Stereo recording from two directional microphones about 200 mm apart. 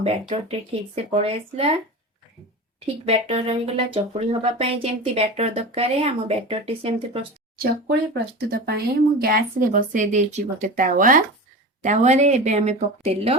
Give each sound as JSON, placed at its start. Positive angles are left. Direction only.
{"t": 0.0, "sound": "speech", "side_deg": -30}
{"t": 2.8, "sound": "speech", "side_deg": -30}
{"t": 8.4, "sound": "speech", "side_deg": -55}